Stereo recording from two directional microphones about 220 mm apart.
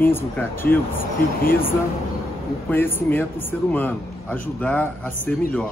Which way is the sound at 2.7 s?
10° left (ahead or behind).